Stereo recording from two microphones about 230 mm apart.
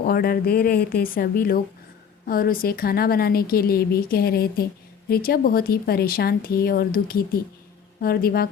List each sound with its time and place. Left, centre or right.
0.0 s a woman's voice: left